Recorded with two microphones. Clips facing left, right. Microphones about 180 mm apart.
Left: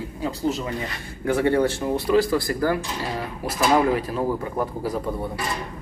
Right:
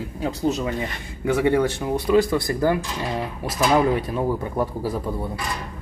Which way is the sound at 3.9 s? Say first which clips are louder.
Right 1 dB; 25° right (ahead or behind).